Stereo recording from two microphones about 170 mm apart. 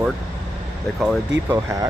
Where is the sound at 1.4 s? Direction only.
15° right (ahead or behind).